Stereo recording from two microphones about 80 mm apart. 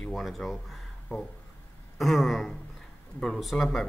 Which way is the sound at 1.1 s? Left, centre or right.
Left.